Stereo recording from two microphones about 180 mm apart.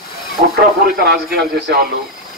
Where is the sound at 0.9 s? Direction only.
60° right (ahead or behind).